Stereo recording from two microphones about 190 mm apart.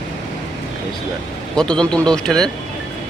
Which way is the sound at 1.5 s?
5° left (ahead or behind).